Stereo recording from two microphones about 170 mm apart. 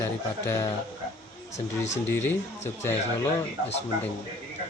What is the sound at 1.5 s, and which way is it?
Speech, 40° left (ahead or behind).